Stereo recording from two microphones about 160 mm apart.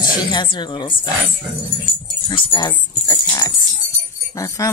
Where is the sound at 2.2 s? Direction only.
30° left (ahead or behind).